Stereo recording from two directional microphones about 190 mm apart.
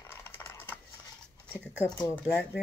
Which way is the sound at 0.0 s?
10° left (ahead or behind).